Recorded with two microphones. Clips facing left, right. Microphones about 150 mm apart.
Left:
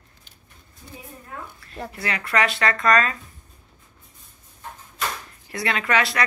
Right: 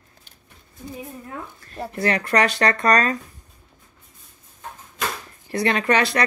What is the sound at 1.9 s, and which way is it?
Speech, 45° right (ahead or behind).